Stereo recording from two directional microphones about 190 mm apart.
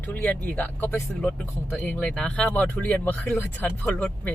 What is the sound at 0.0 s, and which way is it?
Speech, 10° left (ahead or behind).